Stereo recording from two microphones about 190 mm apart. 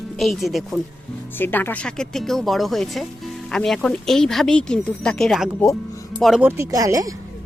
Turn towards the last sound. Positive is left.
turn(degrees=-20)  # may be behind; listen again after turning